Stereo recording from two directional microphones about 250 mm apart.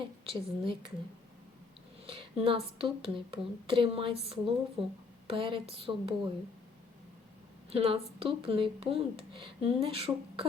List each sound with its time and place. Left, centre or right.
0.0 s a woman's voice: right
2.0 s a woman's voice: right
7.7 s a woman's voice: right